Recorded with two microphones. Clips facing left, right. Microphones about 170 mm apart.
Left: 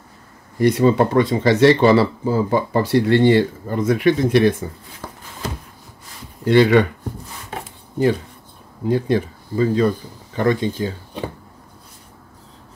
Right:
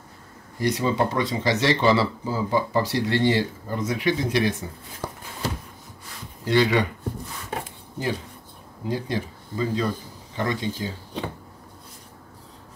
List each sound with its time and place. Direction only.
0.6 s speech: 55° left (ahead or behind)
6.4 s speech: 60° left (ahead or behind)
8.8 s speech: 60° left (ahead or behind)